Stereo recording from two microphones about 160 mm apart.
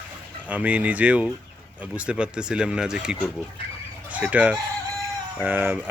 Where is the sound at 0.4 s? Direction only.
10° right (ahead or behind).